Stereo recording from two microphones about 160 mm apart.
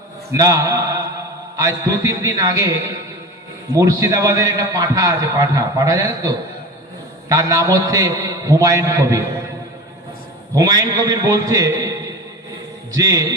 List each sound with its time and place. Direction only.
0.3 s a man's voice: 20° right (ahead or behind)
10.5 s a man's voice: 20° right (ahead or behind)
12.9 s a man's voice: 20° right (ahead or behind)